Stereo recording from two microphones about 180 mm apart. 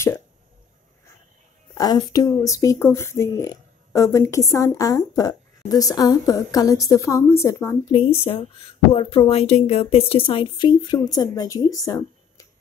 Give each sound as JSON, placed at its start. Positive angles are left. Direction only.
{"t": 1.8, "sound": "a woman's voice", "side_deg": 20}
{"t": 7.9, "sound": "speech", "side_deg": 30}